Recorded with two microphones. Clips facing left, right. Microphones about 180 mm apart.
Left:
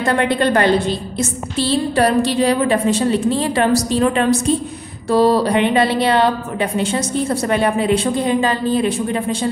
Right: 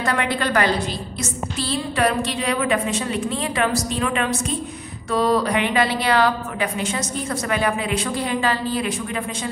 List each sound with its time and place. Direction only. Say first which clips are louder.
0.0 s a woman's voice: left 6 dB; 25° left (ahead or behind)